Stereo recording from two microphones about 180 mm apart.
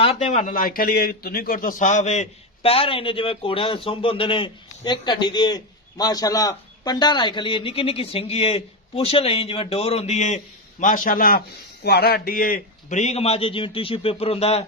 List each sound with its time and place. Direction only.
0.0 s a man's voice: 35° left (ahead or behind)